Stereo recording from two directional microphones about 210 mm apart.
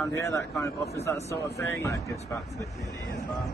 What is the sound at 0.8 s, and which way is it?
Speech, 50° left (ahead or behind).